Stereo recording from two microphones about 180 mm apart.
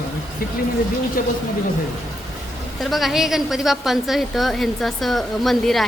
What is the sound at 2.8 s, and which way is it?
A woman's voice, centre (ahead or behind).